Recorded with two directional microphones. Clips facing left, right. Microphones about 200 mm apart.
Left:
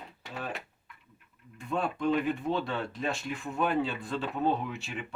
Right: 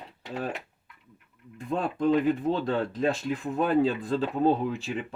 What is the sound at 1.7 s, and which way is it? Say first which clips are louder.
Speech: right 4 dB; 35° right (ahead or behind).